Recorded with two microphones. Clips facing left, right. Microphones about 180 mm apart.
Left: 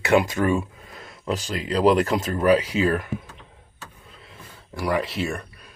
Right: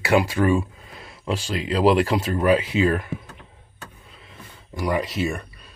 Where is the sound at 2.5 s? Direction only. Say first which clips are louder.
Even; 40° left (ahead or behind).